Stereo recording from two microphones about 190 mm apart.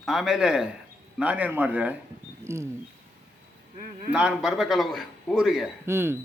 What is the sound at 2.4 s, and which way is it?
Wild animals, 15° right (ahead or behind).